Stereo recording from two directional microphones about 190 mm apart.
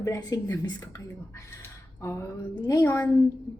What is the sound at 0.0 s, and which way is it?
Speech, 15° left (ahead or behind).